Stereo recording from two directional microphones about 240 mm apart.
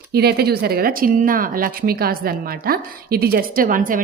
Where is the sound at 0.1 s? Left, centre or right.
Right.